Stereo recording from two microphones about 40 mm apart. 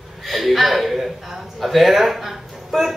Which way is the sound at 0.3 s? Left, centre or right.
Centre.